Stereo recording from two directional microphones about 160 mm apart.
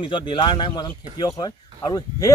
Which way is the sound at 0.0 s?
30° left (ahead or behind).